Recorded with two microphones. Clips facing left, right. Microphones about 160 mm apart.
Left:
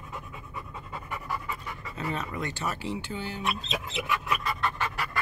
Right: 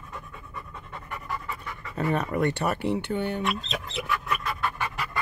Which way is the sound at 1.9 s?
60° right (ahead or behind).